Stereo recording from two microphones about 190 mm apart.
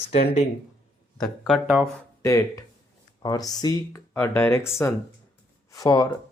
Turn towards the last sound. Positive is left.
turn(degrees=20)  # may be behind; listen again after turning